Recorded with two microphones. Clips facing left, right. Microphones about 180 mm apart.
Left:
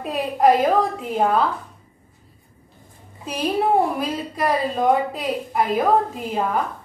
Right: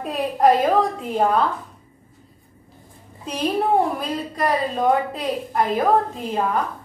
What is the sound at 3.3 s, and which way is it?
A woman's voice, 5° left (ahead or behind).